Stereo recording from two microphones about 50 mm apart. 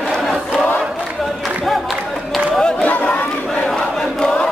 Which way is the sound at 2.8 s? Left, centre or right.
Left.